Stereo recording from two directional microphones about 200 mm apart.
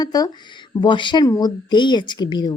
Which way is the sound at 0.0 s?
20° left (ahead or behind).